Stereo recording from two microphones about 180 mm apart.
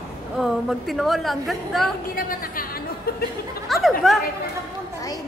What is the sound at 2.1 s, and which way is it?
A woman's voice, 50° left (ahead or behind).